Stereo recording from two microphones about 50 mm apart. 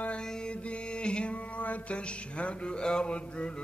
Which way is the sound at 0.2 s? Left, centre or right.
Centre.